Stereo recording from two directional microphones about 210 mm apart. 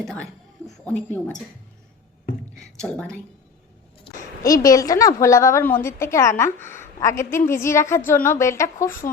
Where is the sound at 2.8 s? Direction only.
5° left (ahead or behind).